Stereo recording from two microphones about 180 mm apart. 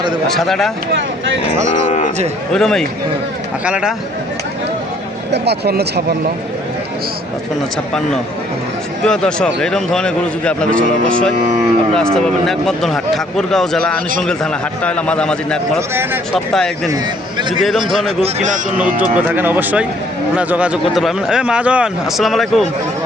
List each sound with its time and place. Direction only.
0.3 s a man's voice: centre (ahead or behind)
1.9 s speech: 40° left (ahead or behind)
2.5 s a man's voice: 5° left (ahead or behind)
5.3 s speech: 65° right (ahead or behind)
9.0 s a man's voice: 5° left (ahead or behind)
18.2 s a man's voice: 40° right (ahead or behind)
19.1 s a man's voice: 10° right (ahead or behind)